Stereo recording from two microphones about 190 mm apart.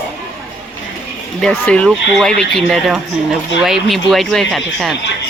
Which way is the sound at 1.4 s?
5° left (ahead or behind).